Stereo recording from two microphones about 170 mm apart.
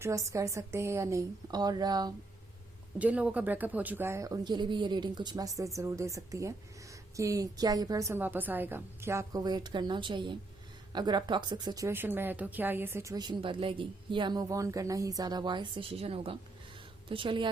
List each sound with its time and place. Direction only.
0.0 s speech: 20° right (ahead or behind)
3.0 s speech: 10° right (ahead or behind); by 17.5 s 30° right (ahead or behind)